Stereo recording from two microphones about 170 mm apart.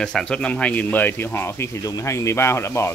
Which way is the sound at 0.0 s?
5° left (ahead or behind).